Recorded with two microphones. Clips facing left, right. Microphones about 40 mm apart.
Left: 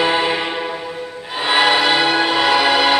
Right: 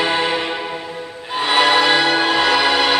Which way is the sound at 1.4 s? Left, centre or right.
Centre.